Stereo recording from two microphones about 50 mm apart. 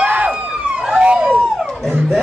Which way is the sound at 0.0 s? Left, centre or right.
Right.